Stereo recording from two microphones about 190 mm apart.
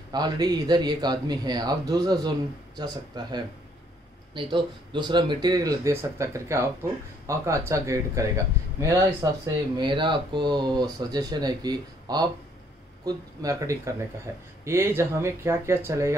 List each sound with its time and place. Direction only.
0.1 s a man's voice: 20° right (ahead or behind)